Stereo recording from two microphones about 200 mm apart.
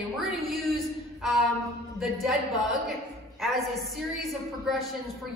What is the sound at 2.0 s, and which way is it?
Speech, centre (ahead or behind).